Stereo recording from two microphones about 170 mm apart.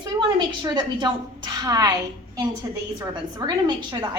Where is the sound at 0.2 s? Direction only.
25° right (ahead or behind).